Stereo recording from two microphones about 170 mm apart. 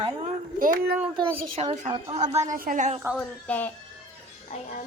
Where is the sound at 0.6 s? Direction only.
55° right (ahead or behind).